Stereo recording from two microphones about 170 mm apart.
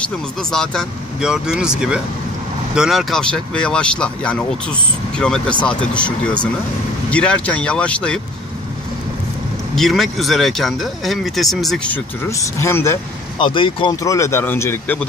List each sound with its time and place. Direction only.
0.4 s speech: 5° left (ahead or behind)
9.8 s speech: centre (ahead or behind)
12.3 s speech: 15° left (ahead or behind)
13.4 s speech: 30° left (ahead or behind)
14.0 s speech: 15° left (ahead or behind)